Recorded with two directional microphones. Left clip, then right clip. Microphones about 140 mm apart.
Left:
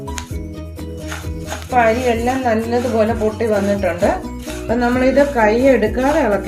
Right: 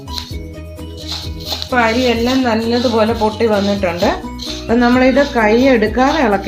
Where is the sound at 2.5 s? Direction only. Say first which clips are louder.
Right 2 dB; 45° right (ahead or behind).